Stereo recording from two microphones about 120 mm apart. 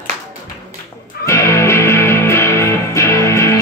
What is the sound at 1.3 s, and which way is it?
Music, 25° left (ahead or behind).